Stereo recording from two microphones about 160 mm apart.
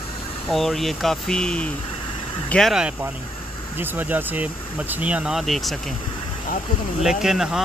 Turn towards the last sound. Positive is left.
turn(degrees=-5)  # may be behind; listen again after turning